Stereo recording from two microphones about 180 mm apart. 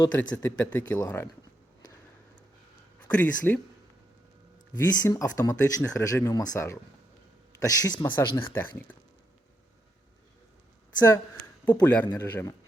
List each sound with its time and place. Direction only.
0.0 s speech: 15° left (ahead or behind)
3.1 s speech: 10° left (ahead or behind)
4.7 s speech: 20° left (ahead or behind)
10.9 s speech: 20° left (ahead or behind)
12.0 s speech: 20° left (ahead or behind)